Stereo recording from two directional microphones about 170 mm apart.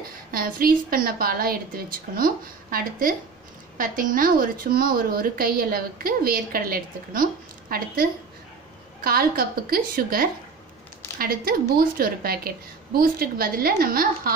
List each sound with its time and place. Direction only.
0.3 s a woman's voice: 55° right (ahead or behind)